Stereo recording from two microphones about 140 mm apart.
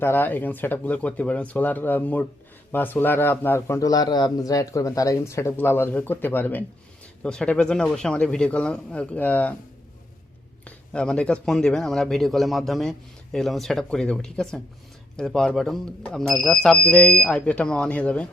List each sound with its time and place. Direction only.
0.0 s a man's voice: 15° left (ahead or behind)
10.7 s a man's voice: 5° left (ahead or behind)